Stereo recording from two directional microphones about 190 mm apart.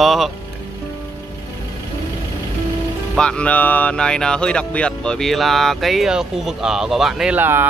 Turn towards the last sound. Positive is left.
turn(degrees=-10)  # may be behind; listen again after turning